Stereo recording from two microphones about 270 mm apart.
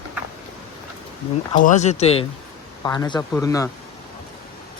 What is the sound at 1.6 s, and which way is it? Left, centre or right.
Speech, left.